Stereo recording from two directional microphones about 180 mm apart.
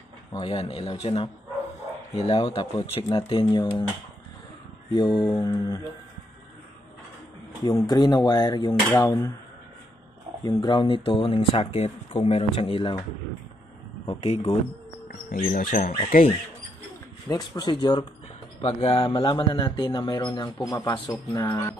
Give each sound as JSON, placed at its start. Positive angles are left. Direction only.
{"t": 0.3, "sound": "speech", "side_deg": 30}
{"t": 4.9, "sound": "speech", "side_deg": 25}
{"t": 7.6, "sound": "speech", "side_deg": 20}
{"t": 10.4, "sound": "speech", "side_deg": 25}
{"t": 14.2, "sound": "speech", "side_deg": 35}
{"t": 15.0, "sound": "speech", "side_deg": 55}
{"t": 17.3, "sound": "speech", "side_deg": 25}